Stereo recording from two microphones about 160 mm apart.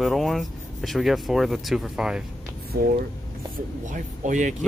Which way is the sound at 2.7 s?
70° right (ahead or behind).